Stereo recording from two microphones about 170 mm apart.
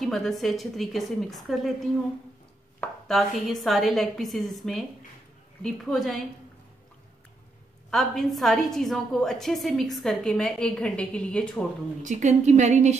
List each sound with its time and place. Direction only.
0.0 s a woman's voice: centre (ahead or behind)
7.9 s a woman's voice: centre (ahead or behind)
12.0 s a woman's voice: 45° right (ahead or behind)